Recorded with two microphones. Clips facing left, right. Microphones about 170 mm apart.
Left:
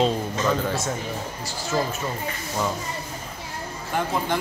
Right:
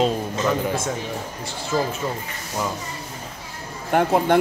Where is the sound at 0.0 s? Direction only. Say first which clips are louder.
Right 1 dB; 10° right (ahead or behind).